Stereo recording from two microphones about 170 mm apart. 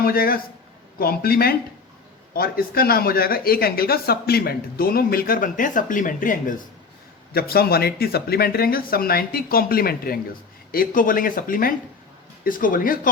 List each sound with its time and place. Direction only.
0.0 s speech: 60° left (ahead or behind)
7.3 s speech: 65° left (ahead or behind)